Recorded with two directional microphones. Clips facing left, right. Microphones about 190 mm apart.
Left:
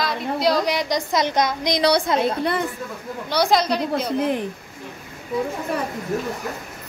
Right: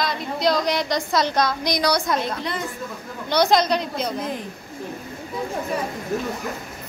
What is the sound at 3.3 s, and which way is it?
Speech, 5° left (ahead or behind).